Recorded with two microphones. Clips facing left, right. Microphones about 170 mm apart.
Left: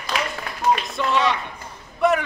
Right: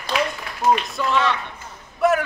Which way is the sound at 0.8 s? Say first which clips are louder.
Even; centre (ahead or behind).